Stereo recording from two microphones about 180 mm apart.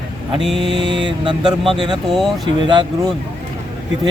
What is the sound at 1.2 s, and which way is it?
Speech, 25° right (ahead or behind).